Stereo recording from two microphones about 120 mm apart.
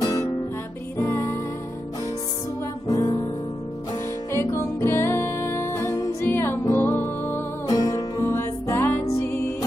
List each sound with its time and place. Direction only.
0.0 s music: 30° left (ahead or behind)
2.9 s music: 30° left (ahead or behind)
4.3 s music: 25° left (ahead or behind)
7.6 s music: 35° left (ahead or behind)
8.2 s music: 20° left (ahead or behind)